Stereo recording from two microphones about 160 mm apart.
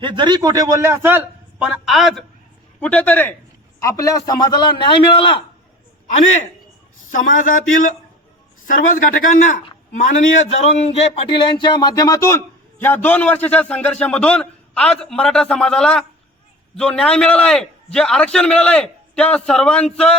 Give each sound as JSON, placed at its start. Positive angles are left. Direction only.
{"t": 0.0, "sound": "a man's voice", "side_deg": -30}
{"t": 7.1, "sound": "a man's voice", "side_deg": 55}